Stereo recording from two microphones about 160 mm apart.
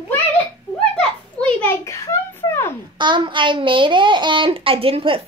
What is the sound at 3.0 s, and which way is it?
A child's voice, 30° right (ahead or behind).